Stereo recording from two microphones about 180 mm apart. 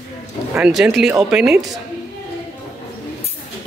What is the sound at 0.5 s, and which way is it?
Speech, 5° right (ahead or behind).